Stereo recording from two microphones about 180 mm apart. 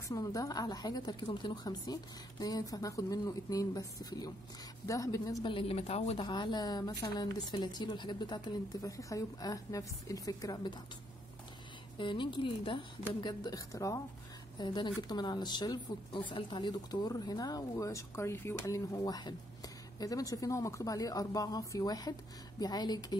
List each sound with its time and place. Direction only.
0.1 s speech: 20° left (ahead or behind); by 6.2 s 35° left (ahead or behind)
6.2 s speech: 25° left (ahead or behind)
12.0 s speech: 25° left (ahead or behind)